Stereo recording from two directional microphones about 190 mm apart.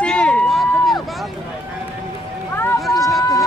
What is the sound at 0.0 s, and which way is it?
Run, 5° left (ahead or behind).